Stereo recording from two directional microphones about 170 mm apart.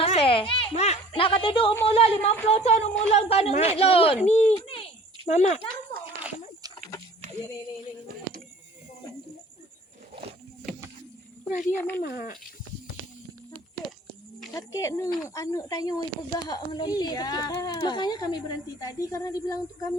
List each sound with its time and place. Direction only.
0.0 s a sound: 35° left (ahead or behind)
1.9 s speech: 35° left (ahead or behind)
11.7 s speech: 10° left (ahead or behind)
11.9 s speech: 60° left (ahead or behind)
14.5 s a woman's voice: 20° left (ahead or behind)